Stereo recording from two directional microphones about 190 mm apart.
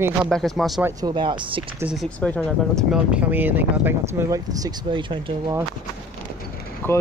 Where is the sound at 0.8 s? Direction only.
25° right (ahead or behind).